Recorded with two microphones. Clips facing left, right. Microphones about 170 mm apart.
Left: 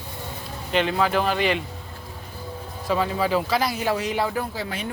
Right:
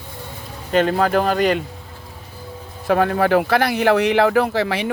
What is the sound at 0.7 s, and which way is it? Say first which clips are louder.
Speech: right 5 dB; 45° right (ahead or behind).